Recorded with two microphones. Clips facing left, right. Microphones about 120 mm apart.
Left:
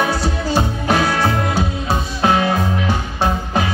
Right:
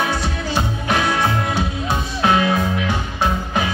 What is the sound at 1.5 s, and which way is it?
Music, 35° left (ahead or behind).